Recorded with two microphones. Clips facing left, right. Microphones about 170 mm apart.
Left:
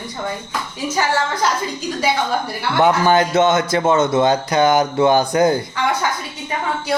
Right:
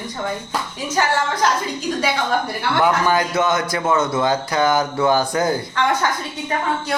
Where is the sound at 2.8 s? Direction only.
25° left (ahead or behind).